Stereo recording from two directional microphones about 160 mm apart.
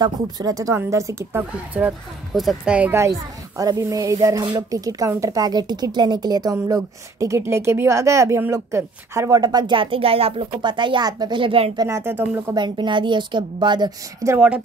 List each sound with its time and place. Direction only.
0.0 s a woman's voice: 20° right (ahead or behind)
1.7 s a woman's voice: 5° right (ahead or behind); by 11.8 s 35° right (ahead or behind)
11.8 s speech: 15° right (ahead or behind)
12.5 s a woman's voice: 30° right (ahead or behind)
14.3 s speech: 5° right (ahead or behind)